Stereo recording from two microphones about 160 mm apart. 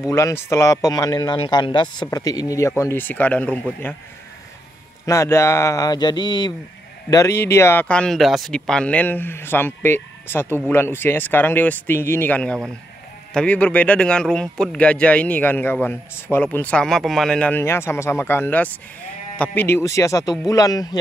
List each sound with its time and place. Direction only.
0.1 s speech: 20° left (ahead or behind)
5.0 s speech: 20° left (ahead or behind)